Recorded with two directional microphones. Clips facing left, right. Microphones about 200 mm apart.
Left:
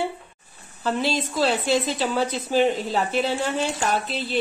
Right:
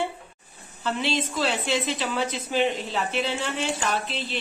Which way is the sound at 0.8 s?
40° left (ahead or behind).